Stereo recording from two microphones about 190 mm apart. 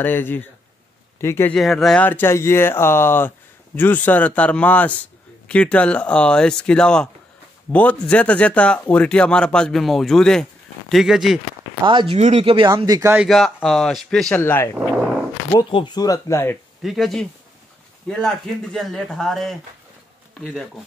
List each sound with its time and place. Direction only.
0.0 s speech: 10° left (ahead or behind)
1.6 s speech: centre (ahead or behind)
11.8 s speech: 25° right (ahead or behind)
12.7 s speech: 15° right (ahead or behind)
13.3 s speech: centre (ahead or behind)
15.5 s speech: 25° left (ahead or behind)
16.8 s speech: centre (ahead or behind)